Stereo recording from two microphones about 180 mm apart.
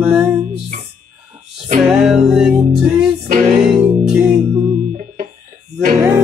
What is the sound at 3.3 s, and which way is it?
Music, 40° right (ahead or behind).